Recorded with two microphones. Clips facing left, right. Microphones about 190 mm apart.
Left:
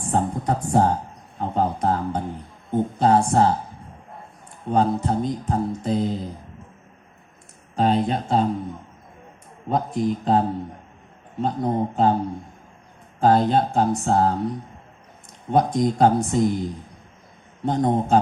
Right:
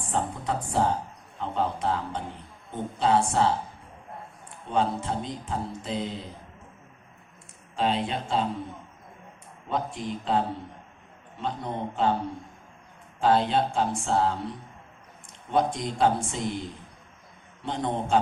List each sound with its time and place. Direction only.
0.1 s speech: 45° left (ahead or behind)
1.4 s a sound: 45° left (ahead or behind)
3.0 s speech: 45° left (ahead or behind)
4.7 s speech: 40° left (ahead or behind)
7.8 s speech: 40° left (ahead or behind)
9.6 s speech: 40° left (ahead or behind)
13.1 s speech: 45° left (ahead or behind)
17.7 s speech: 40° left (ahead or behind)